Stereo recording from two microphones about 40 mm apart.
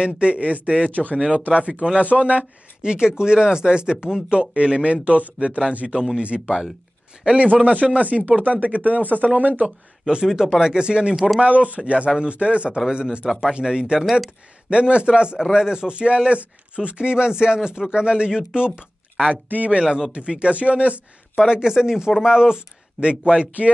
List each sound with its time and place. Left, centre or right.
0.0 s speech: right
1.1 s speech: right
10.0 s speech: centre
11.1 s speech: centre
11.4 s speech: right
12.7 s speech: centre
19.3 s speech: right
19.8 s speech: centre
20.1 s speech: right
21.5 s speech: centre
23.4 s speech: right